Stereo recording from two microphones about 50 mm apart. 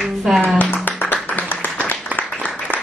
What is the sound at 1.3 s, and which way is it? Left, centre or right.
Clapping, left.